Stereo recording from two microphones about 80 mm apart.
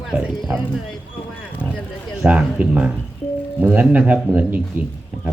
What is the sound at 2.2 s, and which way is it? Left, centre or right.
Speech, centre.